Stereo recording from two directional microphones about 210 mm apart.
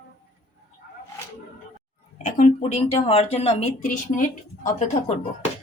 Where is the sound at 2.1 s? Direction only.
35° left (ahead or behind).